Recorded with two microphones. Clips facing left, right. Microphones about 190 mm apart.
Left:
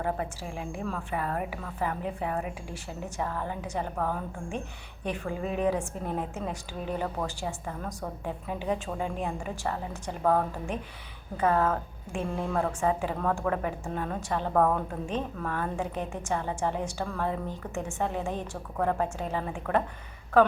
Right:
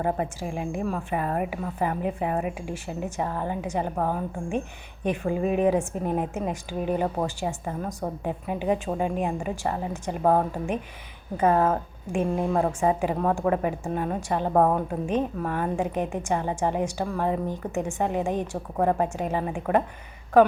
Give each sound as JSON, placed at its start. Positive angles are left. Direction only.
{"t": 0.0, "sound": "a woman's voice", "side_deg": -20}